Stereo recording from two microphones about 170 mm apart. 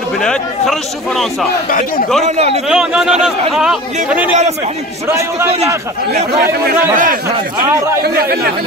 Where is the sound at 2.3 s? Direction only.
40° right (ahead or behind).